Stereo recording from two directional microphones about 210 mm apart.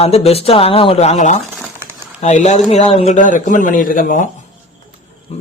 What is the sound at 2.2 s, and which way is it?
Speech, 35° left (ahead or behind).